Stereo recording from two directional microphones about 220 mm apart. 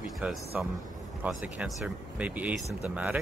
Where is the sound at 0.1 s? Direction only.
Centre (ahead or behind).